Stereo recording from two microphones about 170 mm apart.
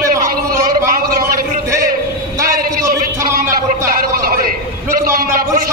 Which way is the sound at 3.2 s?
55° right (ahead or behind).